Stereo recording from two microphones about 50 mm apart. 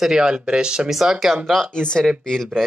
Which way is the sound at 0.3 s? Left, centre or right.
Centre.